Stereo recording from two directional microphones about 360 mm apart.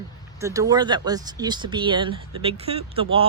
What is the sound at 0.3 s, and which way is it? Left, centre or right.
Speech, centre.